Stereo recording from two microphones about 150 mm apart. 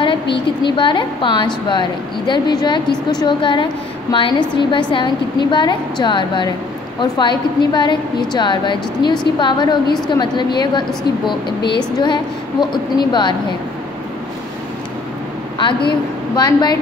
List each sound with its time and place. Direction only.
0.7 s a woman's voice: 35° left (ahead or behind)
11.4 s speech: 90° left
12.0 s a woman's voice: 30° left (ahead or behind)
16.3 s a woman's voice: 30° left (ahead or behind)